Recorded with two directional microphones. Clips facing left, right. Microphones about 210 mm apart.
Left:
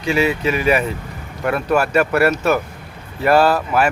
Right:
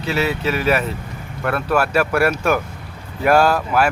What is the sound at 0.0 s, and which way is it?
A man's voice, centre (ahead or behind).